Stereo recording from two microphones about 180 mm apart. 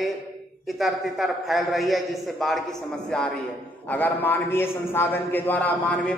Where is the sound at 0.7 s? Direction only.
Centre (ahead or behind).